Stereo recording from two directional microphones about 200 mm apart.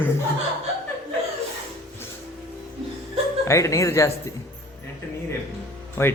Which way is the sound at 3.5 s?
15° left (ahead or behind).